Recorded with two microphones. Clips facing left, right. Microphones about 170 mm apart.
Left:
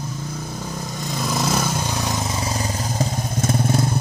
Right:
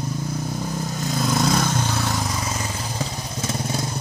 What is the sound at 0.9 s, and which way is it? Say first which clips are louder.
Vehicle: right 2 dB; centre (ahead or behind).